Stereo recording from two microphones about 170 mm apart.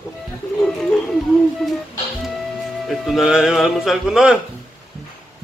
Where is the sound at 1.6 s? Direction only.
Centre (ahead or behind).